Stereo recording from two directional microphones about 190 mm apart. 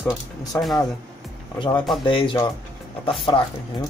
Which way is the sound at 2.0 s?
25° left (ahead or behind).